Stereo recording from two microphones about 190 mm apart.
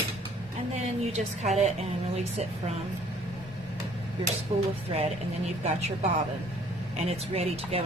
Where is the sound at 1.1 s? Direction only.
35° right (ahead or behind).